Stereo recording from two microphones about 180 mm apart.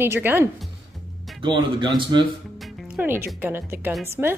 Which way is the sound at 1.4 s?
25° right (ahead or behind).